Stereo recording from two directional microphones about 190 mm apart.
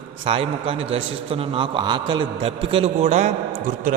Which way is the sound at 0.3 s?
30° right (ahead or behind).